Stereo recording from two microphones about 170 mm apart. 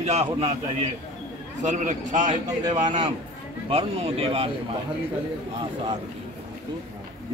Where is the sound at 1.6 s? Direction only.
45° right (ahead or behind).